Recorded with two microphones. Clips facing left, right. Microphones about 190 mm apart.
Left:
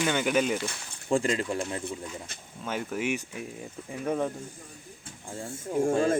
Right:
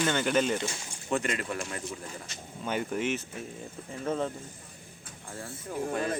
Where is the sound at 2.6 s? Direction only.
Centre (ahead or behind).